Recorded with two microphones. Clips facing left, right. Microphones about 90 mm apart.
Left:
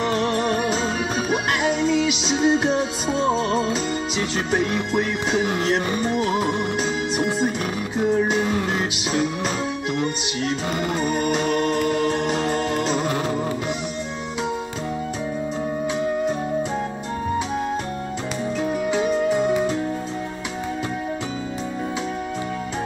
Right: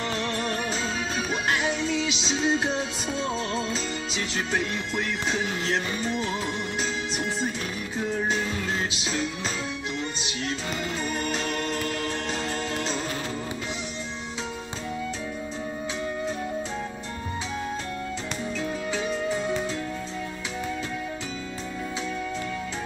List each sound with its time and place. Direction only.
0.1 s music: 50° left (ahead or behind)
0.4 s music: 15° left (ahead or behind)
1.8 s music: 50° left (ahead or behind)
2.2 s music: 10° left (ahead or behind)
3.1 s music: 45° left (ahead or behind)
8.5 s music: 55° left (ahead or behind)
11.0 s music: 55° left (ahead or behind)
18.6 s music: 15° left (ahead or behind)